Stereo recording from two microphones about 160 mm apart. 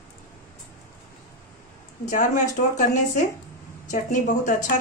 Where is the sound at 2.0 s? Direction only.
50° left (ahead or behind).